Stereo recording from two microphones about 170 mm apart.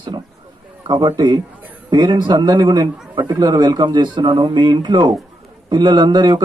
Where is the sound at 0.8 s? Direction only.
25° right (ahead or behind).